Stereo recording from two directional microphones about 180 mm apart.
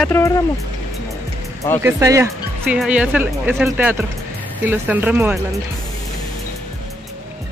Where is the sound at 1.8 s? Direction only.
15° right (ahead or behind).